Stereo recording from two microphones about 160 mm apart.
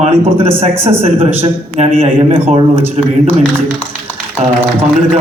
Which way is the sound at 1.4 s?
35° right (ahead or behind).